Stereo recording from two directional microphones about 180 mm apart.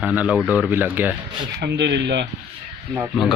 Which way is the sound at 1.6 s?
70° right (ahead or behind).